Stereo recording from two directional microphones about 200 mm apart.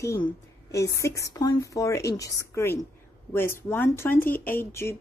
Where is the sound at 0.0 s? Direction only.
15° left (ahead or behind).